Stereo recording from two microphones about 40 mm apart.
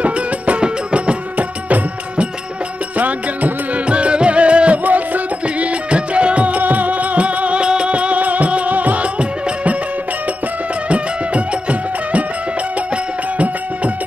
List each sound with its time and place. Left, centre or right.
0.0 s music: right
3.0 s music: right
4.8 s music: right